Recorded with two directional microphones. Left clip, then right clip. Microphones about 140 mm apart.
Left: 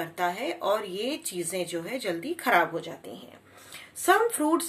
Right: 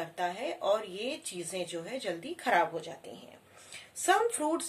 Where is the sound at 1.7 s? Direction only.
10° right (ahead or behind).